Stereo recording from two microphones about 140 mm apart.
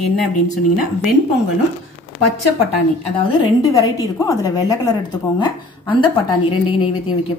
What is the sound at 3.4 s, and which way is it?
A woman's voice, 25° left (ahead or behind).